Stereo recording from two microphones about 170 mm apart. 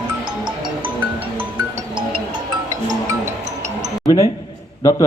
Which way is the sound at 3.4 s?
40° right (ahead or behind).